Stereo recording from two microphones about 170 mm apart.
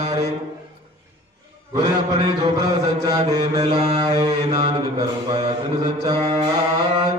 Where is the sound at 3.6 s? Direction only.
40° right (ahead or behind).